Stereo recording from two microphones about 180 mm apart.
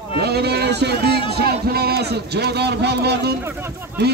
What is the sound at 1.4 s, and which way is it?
Speech, 60° right (ahead or behind).